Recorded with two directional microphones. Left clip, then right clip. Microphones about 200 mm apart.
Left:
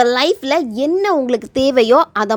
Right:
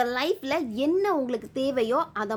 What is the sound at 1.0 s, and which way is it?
A woman's voice, 40° left (ahead or behind).